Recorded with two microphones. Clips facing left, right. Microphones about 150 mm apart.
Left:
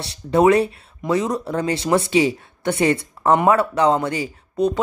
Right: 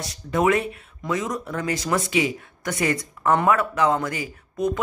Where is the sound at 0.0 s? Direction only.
30° left (ahead or behind).